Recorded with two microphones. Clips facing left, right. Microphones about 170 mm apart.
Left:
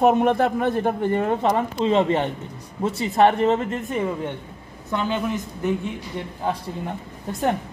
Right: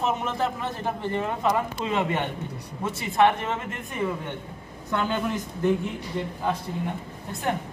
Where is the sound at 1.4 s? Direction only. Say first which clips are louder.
Left 4 dB; 30° left (ahead or behind).